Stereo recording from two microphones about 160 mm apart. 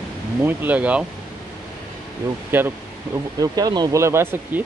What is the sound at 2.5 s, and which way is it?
Speech, 15° right (ahead or behind).